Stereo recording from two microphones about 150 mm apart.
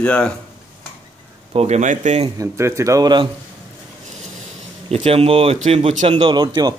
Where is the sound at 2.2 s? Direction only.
20° right (ahead or behind).